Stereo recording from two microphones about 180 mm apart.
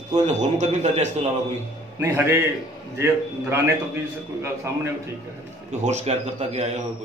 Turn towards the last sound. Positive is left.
turn(degrees=-40)  # may be behind; listen again after turning